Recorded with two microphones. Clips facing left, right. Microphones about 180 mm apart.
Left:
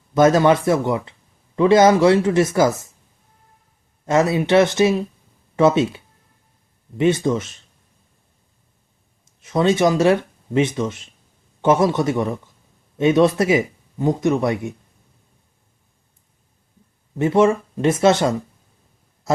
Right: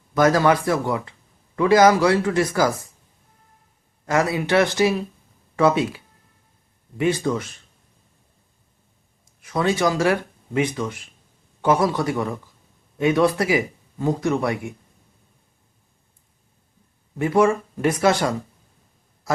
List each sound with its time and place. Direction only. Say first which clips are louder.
0.1 s speech: left 3 dB; 25° left (ahead or behind)
4.0 s speech: left 4 dB; 25° left (ahead or behind)
9.4 s speech: left 4 dB; 20° left (ahead or behind)
17.2 s speech: left 2 dB; 25° left (ahead or behind)